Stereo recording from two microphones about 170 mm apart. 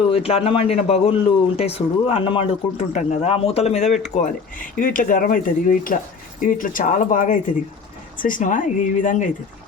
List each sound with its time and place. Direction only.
0.1 s speech: 35° left (ahead or behind)